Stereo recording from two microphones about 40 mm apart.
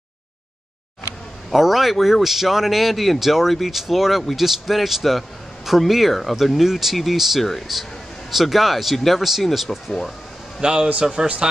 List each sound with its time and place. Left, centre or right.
1.5 s a man's voice: centre
10.6 s a man's voice: right